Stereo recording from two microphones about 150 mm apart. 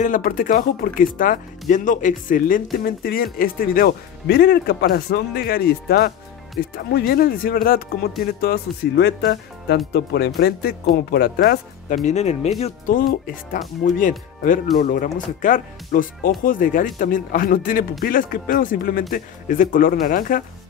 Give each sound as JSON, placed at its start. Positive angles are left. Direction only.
{"t": 0.0, "sound": "speech", "side_deg": 65}
{"t": 2.8, "sound": "speech", "side_deg": 80}
{"t": 12.9, "sound": "speech", "side_deg": 70}
{"t": 13.8, "sound": "speech", "side_deg": 60}